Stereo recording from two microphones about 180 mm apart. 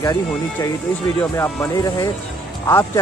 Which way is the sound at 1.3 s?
20° left (ahead or behind).